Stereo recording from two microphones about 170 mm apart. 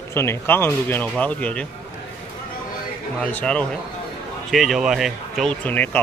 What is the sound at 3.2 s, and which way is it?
Speech, 5° left (ahead or behind).